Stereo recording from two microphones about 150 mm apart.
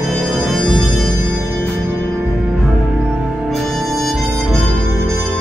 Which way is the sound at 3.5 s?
Centre (ahead or behind).